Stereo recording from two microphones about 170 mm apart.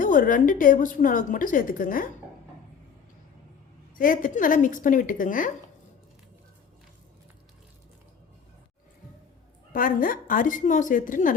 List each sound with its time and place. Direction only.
0.0 s a woman's voice: 50° left (ahead or behind)
3.9 s a woman's voice: 55° left (ahead or behind)
9.7 s a woman's voice: 55° left (ahead or behind)